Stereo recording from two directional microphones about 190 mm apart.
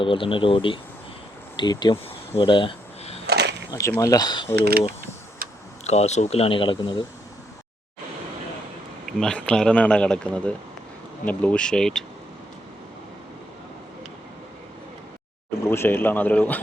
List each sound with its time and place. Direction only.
0.0 s speech: 25° left (ahead or behind)
2.4 s a sound: 25° left (ahead or behind)
3.2 s a sound: 60° right (ahead or behind)
3.7 s speech: 15° left (ahead or behind)
4.5 s speech: 60° right (ahead or behind)
5.4 s a sound: 50° right (ahead or behind)
5.8 s speech: 35° left (ahead or behind)
9.2 s speech: 5° left (ahead or behind)
15.7 s speech: 10° left (ahead or behind)